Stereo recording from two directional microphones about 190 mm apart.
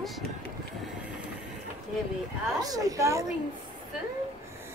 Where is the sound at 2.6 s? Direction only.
20° right (ahead or behind).